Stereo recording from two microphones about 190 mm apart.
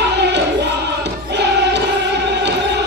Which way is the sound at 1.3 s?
65° right (ahead or behind).